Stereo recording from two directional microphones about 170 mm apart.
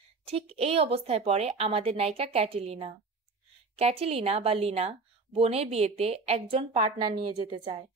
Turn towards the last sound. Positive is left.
turn(degrees=-30)  # may be behind; listen again after turning